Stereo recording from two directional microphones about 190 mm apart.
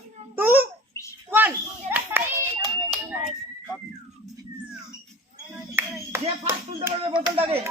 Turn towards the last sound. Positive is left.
turn(degrees=-30)  # may be behind; listen again after turning